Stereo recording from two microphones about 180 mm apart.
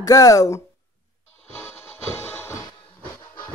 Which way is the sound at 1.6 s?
15° left (ahead or behind).